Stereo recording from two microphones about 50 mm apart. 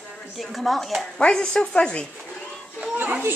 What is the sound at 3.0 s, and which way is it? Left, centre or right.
Speech, right.